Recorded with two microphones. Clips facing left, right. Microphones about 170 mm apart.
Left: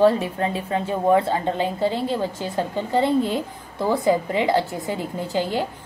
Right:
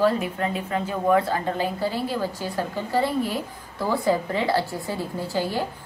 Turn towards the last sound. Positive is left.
turn(degrees=20)  # may be behind; listen again after turning